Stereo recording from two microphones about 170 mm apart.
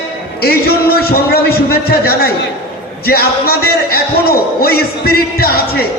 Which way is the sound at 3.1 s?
65° left (ahead or behind).